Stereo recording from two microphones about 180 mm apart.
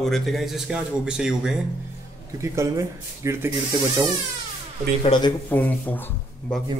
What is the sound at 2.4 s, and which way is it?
Speech, 15° right (ahead or behind).